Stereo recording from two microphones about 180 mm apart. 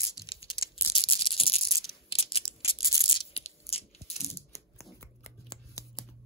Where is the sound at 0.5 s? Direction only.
30° left (ahead or behind).